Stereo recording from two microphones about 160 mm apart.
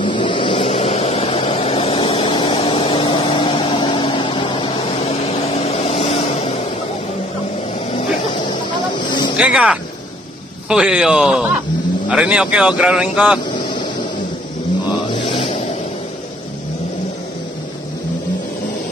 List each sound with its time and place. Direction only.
0.0 s vehicle: 30° left (ahead or behind)
7.9 s vehicle: 30° left (ahead or behind)
9.4 s speech: 5° right (ahead or behind)
14.9 s vehicle: 30° left (ahead or behind)